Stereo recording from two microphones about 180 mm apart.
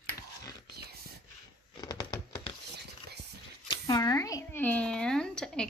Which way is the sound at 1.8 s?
20° left (ahead or behind).